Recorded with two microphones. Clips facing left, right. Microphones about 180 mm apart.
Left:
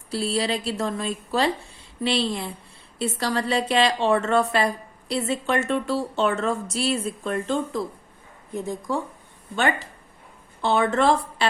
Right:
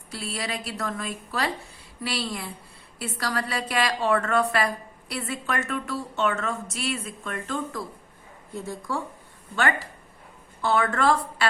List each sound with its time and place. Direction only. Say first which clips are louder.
0.1 s a woman's voice: left 8 dB; 30° left (ahead or behind)